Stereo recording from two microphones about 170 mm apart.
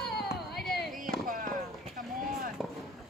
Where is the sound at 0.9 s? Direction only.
55° right (ahead or behind).